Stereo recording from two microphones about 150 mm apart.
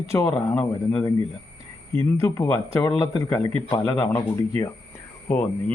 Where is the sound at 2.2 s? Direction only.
20° left (ahead or behind).